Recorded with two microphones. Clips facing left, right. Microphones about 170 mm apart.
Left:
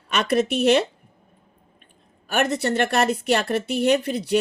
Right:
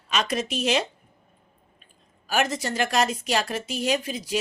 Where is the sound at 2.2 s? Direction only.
60° left (ahead or behind).